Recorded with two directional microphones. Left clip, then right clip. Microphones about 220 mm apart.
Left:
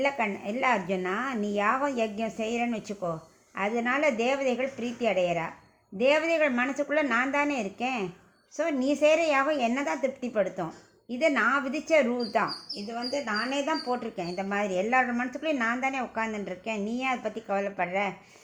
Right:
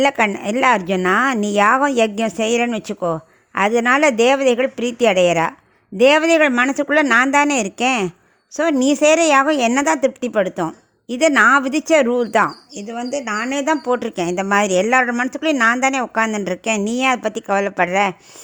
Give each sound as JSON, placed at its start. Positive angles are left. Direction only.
{"t": 0.0, "sound": "speech", "side_deg": -50}